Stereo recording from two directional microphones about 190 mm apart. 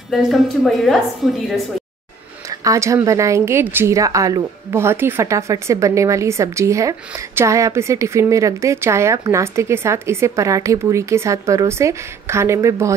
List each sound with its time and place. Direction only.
0.1 s a woman's voice: centre (ahead or behind)
2.6 s speech: 15° right (ahead or behind)